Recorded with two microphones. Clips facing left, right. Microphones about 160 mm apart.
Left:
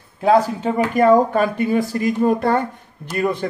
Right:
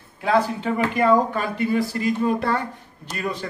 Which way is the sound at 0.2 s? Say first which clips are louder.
Left 5 dB; 40° left (ahead or behind).